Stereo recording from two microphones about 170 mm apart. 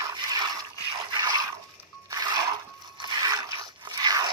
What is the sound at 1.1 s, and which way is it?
Drip, 25° right (ahead or behind).